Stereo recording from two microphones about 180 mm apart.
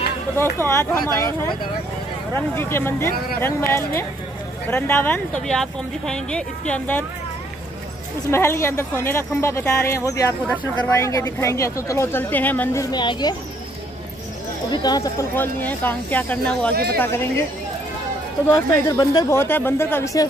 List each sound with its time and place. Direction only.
0.4 s speech: 15° left (ahead or behind)
2.3 s speech: 10° left (ahead or behind)
8.3 s speech: 15° left (ahead or behind)
12.9 s speech: 25° left (ahead or behind)
14.7 s speech: 25° left (ahead or behind); by 16.7 s 5° left (ahead or behind)
16.7 s speech: 55° right (ahead or behind)
17.0 s speech: 15° left (ahead or behind)
18.9 s speech: 20° left (ahead or behind)